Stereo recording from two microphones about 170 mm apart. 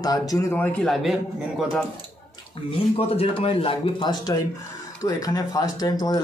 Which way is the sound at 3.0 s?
35° left (ahead or behind).